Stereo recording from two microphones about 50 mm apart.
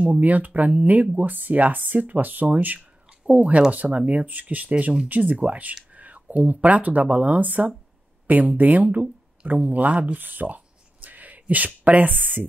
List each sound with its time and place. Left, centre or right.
0.0 s speech: right
5.9 s whispering: right
6.3 s speech: right